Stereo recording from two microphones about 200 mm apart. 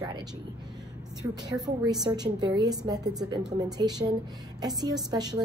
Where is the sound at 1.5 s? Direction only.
20° right (ahead or behind).